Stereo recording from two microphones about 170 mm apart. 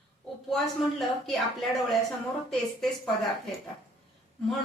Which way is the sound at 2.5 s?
Centre (ahead or behind).